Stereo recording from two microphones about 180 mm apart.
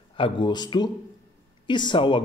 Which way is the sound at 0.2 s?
25° left (ahead or behind).